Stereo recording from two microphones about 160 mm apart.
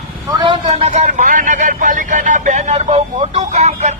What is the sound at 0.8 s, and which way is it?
Speech, 45° right (ahead or behind).